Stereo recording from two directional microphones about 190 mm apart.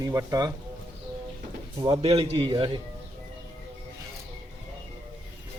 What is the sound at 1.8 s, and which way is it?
Speech, 20° right (ahead or behind).